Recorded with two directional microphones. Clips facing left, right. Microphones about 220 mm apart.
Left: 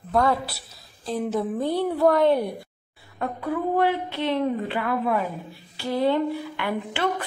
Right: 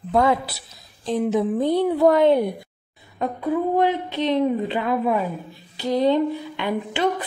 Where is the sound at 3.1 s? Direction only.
20° right (ahead or behind).